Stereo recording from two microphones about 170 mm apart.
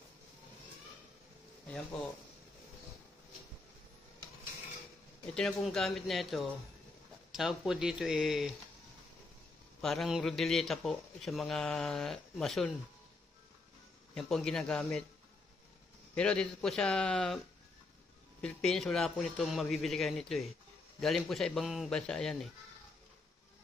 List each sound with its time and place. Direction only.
5.2 s a man's voice: 5° left (ahead or behind)
9.8 s a man's voice: centre (ahead or behind)
14.1 s a man's voice: 5° left (ahead or behind)
16.2 s a man's voice: 5° left (ahead or behind)
18.4 s a man's voice: 5° left (ahead or behind)